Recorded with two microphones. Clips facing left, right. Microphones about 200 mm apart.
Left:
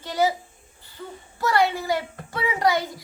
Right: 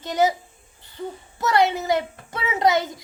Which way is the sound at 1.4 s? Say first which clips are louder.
Right 2 dB; 20° right (ahead or behind).